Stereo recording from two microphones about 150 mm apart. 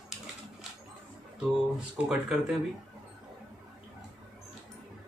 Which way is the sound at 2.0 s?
5° right (ahead or behind).